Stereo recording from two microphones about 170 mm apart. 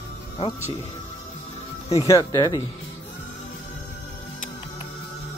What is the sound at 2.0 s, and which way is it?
Speech, 20° left (ahead or behind).